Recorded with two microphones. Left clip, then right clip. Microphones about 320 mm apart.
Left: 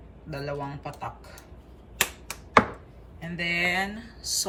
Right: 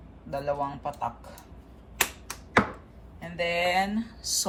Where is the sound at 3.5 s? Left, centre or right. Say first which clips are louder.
Even; centre.